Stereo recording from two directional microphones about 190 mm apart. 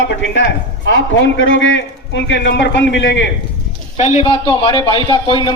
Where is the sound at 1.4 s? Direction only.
80° left.